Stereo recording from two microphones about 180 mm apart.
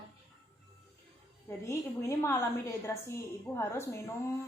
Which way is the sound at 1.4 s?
15° left (ahead or behind).